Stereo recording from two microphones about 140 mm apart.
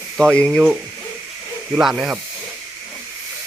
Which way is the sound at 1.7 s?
Centre (ahead or behind).